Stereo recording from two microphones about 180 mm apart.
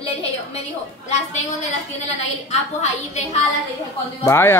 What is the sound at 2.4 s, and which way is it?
Speech, 40° left (ahead or behind).